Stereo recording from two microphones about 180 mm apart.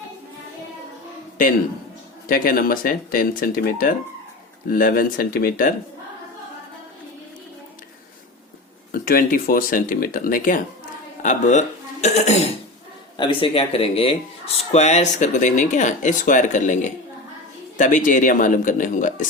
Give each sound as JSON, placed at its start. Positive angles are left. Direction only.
{"t": 2.2, "sound": "speech", "side_deg": 55}
{"t": 8.9, "sound": "speech", "side_deg": 50}